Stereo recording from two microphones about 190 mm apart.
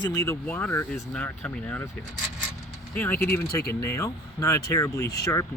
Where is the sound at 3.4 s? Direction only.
55° left (ahead or behind).